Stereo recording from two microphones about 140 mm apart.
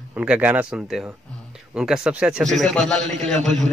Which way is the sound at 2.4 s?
Centre (ahead or behind).